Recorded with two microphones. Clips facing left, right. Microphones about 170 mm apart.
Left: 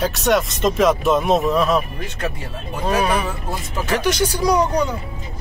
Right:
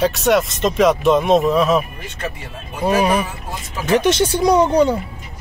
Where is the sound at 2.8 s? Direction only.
15° right (ahead or behind).